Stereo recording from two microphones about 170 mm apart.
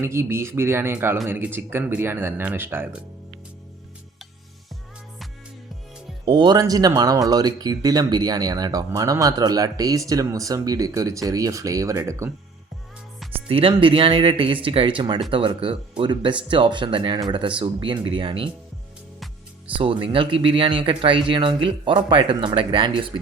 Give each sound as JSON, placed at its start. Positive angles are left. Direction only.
{"t": 0.0, "sound": "speech", "side_deg": -15}
{"t": 6.2, "sound": "speech", "side_deg": -25}
{"t": 13.5, "sound": "speech", "side_deg": -30}
{"t": 19.8, "sound": "speech", "side_deg": -30}